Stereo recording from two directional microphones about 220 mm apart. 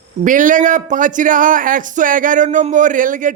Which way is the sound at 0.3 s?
35° right (ahead or behind).